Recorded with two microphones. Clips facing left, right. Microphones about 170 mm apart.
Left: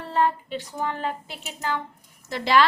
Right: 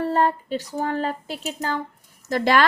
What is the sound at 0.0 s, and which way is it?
A woman's voice, 40° right (ahead or behind).